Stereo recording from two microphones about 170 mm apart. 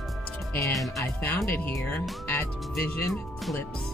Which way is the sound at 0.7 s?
Centre (ahead or behind).